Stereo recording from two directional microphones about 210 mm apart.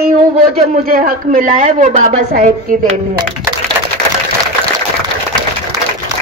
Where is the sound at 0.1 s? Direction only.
40° right (ahead or behind).